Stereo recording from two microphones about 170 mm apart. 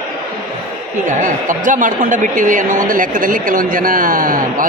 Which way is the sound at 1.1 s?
50° right (ahead or behind).